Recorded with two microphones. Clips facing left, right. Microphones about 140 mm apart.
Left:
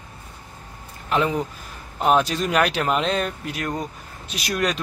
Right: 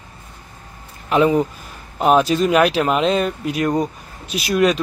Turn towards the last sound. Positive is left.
turn(degrees=-5)  # may be behind; listen again after turning